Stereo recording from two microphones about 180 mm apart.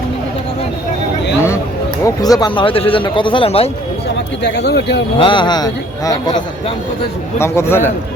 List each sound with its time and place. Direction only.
2.0 s speech: 20° left (ahead or behind)
4.4 s speech: 70° left (ahead or behind)
5.1 s a man's voice: 30° left (ahead or behind)